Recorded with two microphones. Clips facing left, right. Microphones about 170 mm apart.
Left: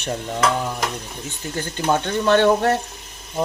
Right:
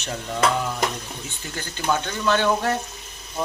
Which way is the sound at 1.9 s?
55° left (ahead or behind).